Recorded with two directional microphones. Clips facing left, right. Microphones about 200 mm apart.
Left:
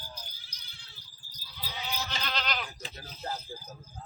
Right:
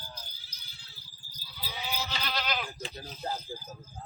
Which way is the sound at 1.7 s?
10° right (ahead or behind).